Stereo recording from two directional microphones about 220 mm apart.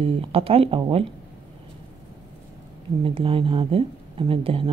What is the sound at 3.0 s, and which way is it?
A woman's voice, 25° right (ahead or behind).